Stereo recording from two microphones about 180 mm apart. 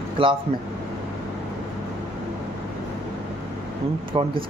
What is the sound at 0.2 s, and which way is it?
Speech, 30° right (ahead or behind).